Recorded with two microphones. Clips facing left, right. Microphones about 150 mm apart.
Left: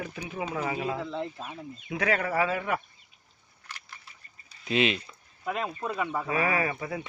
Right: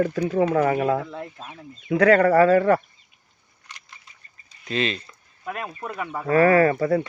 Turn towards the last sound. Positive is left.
turn(degrees=-50)  # may be behind; listen again after turning